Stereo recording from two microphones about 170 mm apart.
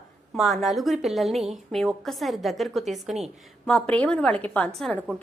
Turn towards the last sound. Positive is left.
turn(degrees=0)  # may be behind; listen again after turning